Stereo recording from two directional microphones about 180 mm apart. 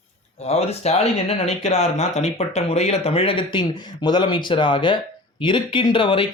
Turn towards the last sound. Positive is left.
turn(degrees=30)  # may be behind; listen again after turning